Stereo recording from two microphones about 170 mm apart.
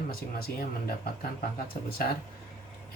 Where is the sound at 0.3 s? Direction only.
60° left (ahead or behind).